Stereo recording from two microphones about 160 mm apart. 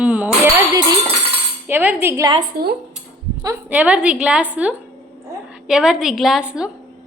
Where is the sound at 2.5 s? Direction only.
75° right (ahead or behind).